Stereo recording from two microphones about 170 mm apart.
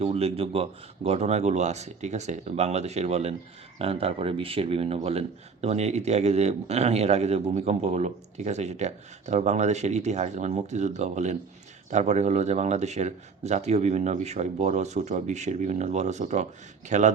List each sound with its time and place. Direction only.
0.0 s speech: 35° right (ahead or behind)